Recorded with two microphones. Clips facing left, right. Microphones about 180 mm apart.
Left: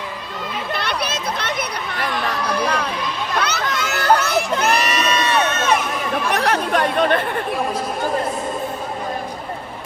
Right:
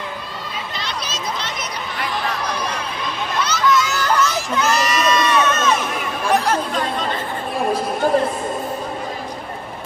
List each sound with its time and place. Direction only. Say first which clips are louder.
0.7 s a sound: left 8 dB; 60° left (ahead or behind)
3.4 s crowd: right 4 dB; 60° left (ahead or behind)
6.3 s chatter: right 1 dB; 65° left (ahead or behind)